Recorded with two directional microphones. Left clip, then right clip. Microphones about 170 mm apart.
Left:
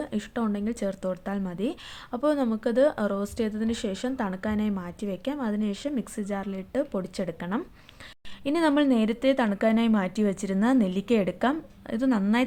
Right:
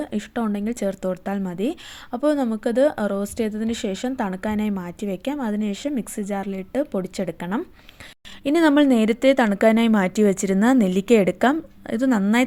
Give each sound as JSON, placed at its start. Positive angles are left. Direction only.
{"t": 0.0, "sound": "a woman's voice", "side_deg": -20}